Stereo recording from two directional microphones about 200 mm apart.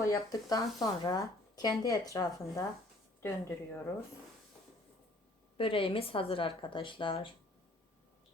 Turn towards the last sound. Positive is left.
turn(degrees=25)  # may be behind; listen again after turning